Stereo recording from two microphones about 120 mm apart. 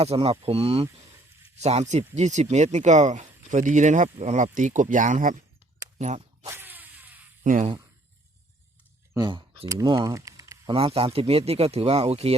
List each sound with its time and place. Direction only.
0.0 s speech: 60° right (ahead or behind)
1.5 s speech: 65° right (ahead or behind)
1.9 s speech: 75° right (ahead or behind)
6.0 s speech: 70° right (ahead or behind)
6.5 s a sound: 15° right (ahead or behind)
7.4 s speech: 90° right
9.1 s speech: 35° right (ahead or behind)
10.7 s speech: 55° right (ahead or behind)